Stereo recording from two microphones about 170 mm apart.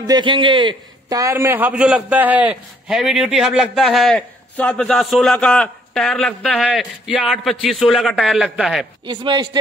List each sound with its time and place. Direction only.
0.0 s a man's voice: 25° right (ahead or behind); by 8.8 s centre (ahead or behind)
9.0 s speech: 30° right (ahead or behind)